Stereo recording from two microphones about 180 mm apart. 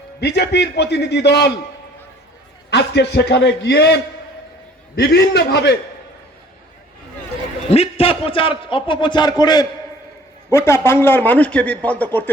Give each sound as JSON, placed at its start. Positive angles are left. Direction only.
{"t": 0.2, "sound": "a man's voice", "side_deg": 65}
{"t": 2.6, "sound": "a man's voice", "side_deg": 70}
{"t": 7.7, "sound": "a man's voice", "side_deg": 35}